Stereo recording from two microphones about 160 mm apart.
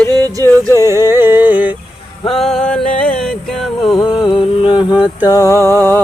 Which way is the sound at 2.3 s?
5° left (ahead or behind).